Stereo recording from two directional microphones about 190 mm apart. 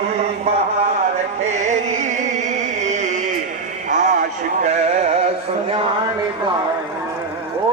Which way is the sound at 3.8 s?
40° right (ahead or behind).